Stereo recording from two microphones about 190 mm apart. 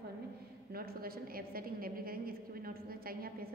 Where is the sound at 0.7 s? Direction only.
50° right (ahead or behind).